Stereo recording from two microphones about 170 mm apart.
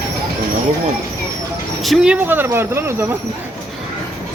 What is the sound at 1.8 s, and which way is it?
Speech, 5° right (ahead or behind).